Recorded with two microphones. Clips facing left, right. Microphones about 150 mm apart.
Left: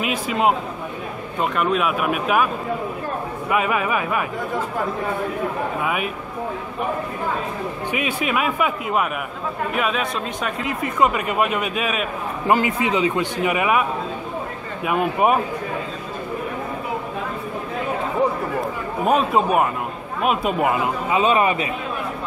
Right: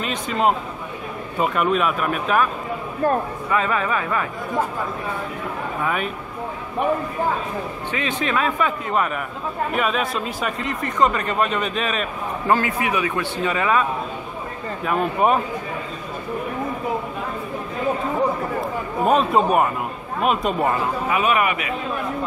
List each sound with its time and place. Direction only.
0.0 s a man's voice: 5° left (ahead or behind)
5.8 s speech: 10° left (ahead or behind)
7.9 s speech: 10° left (ahead or behind)
14.9 s speech: 10° left (ahead or behind)
18.6 s speech: 5° left (ahead or behind)
20.7 s a man's voice: 20° left (ahead or behind)